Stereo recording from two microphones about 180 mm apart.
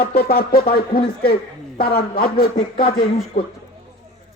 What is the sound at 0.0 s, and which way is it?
Speech, 60° left (ahead or behind).